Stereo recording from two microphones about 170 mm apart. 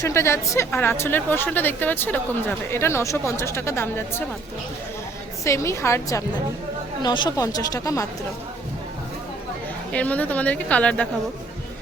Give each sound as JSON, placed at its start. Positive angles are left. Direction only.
{"t": 0.0, "sound": "a woman's voice", "side_deg": 15}
{"t": 5.5, "sound": "a woman's voice", "side_deg": 15}
{"t": 9.9, "sound": "a woman's voice", "side_deg": 10}